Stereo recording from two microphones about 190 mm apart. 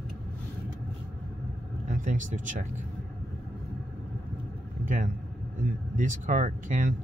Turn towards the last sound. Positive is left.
turn(degrees=-40)  # may be behind; listen again after turning